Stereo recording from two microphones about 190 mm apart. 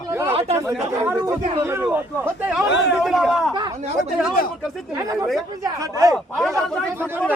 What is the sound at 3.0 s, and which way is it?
Speech, 5° right (ahead or behind).